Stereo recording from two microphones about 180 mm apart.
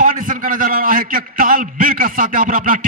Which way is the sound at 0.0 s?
50° right (ahead or behind).